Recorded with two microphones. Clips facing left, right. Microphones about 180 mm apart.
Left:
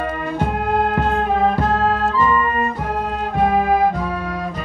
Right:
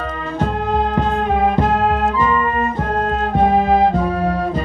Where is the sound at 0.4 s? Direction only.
10° left (ahead or behind).